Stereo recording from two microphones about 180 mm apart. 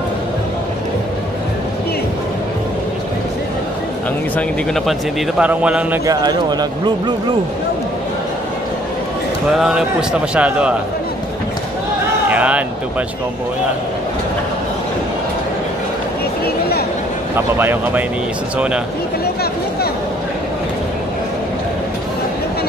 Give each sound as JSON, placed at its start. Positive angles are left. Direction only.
{"t": 4.4, "sound": "a man's voice", "side_deg": 0}
{"t": 6.0, "sound": "speech", "side_deg": -25}
{"t": 9.5, "sound": "a man's voice", "side_deg": -5}
{"t": 12.3, "sound": "speech", "side_deg": -10}
{"t": 17.6, "sound": "a man's voice", "side_deg": -10}